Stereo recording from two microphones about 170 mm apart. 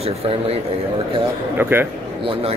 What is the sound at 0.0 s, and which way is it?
Speech, 35° right (ahead or behind).